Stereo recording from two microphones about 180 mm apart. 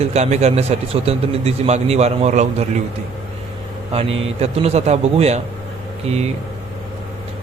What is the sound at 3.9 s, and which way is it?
Speech, 30° right (ahead or behind).